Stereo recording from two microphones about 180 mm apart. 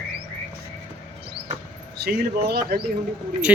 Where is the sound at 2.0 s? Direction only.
60° right (ahead or behind).